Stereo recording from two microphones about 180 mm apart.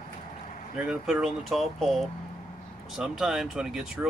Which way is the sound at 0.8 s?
5° right (ahead or behind).